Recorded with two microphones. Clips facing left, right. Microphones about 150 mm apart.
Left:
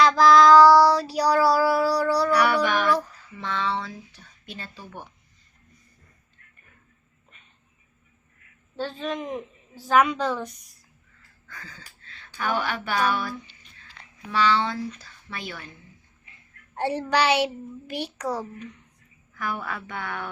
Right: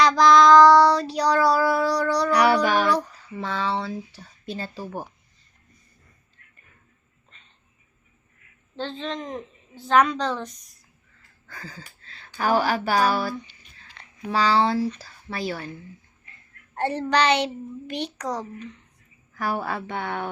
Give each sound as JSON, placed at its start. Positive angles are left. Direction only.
{"t": 0.0, "sound": "child singing", "side_deg": 5}
{"t": 2.3, "sound": "child singing", "side_deg": -35}
{"t": 3.3, "sound": "speech", "side_deg": -35}
{"t": 8.7, "sound": "a child's voice", "side_deg": 10}
{"t": 11.4, "sound": "wheeze", "side_deg": -35}
{"t": 12.0, "sound": "speech", "side_deg": -35}
{"t": 16.7, "sound": "a child's voice", "side_deg": 10}
{"t": 19.3, "sound": "speech", "side_deg": -35}